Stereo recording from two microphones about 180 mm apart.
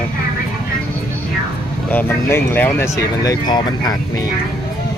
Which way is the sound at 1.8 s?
10° left (ahead or behind).